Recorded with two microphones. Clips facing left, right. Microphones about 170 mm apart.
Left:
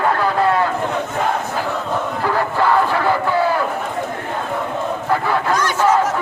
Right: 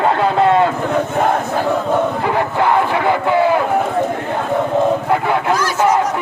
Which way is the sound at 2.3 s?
20° right (ahead or behind).